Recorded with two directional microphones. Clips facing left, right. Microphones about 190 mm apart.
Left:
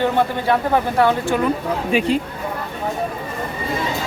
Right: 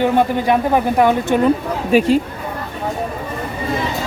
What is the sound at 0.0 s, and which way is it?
Speech, 15° right (ahead or behind).